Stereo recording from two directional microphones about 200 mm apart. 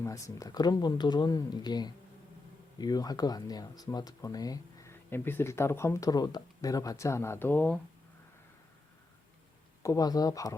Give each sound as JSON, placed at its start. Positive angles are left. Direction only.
{"t": 0.0, "sound": "speech", "side_deg": 15}
{"t": 9.8, "sound": "speech", "side_deg": 15}